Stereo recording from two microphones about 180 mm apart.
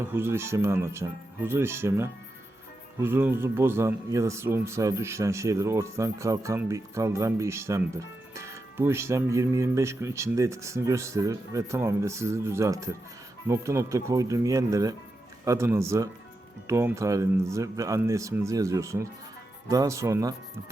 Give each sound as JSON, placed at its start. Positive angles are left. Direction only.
{"t": 0.0, "sound": "speech", "side_deg": -15}